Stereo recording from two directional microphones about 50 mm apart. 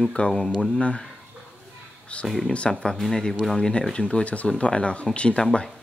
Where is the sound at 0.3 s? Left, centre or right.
Centre.